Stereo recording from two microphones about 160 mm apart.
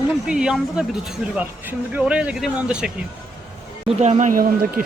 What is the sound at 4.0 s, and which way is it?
Speech, 50° right (ahead or behind).